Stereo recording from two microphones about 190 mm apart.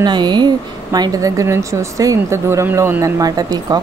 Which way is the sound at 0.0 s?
25° right (ahead or behind).